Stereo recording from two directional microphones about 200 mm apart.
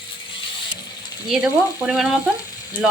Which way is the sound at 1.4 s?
5° right (ahead or behind).